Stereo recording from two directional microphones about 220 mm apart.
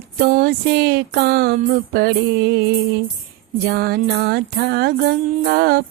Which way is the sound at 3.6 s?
45° right (ahead or behind).